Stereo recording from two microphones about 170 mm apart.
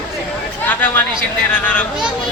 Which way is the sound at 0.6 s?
10° left (ahead or behind).